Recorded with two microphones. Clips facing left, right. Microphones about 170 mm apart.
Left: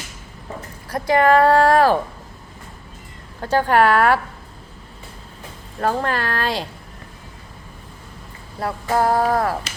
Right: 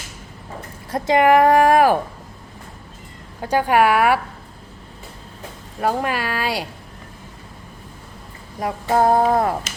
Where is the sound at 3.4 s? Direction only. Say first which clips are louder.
Even; 10° right (ahead or behind).